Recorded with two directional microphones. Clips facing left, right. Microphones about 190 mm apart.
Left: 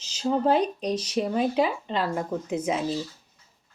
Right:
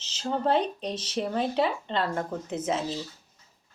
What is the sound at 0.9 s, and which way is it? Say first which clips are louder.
Speech: left 3 dB; 10° left (ahead or behind).